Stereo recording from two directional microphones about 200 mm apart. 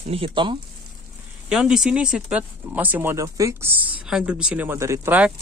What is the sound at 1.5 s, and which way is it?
Speech, 5° right (ahead or behind).